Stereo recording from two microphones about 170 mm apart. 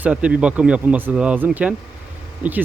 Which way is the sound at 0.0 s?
5° right (ahead or behind).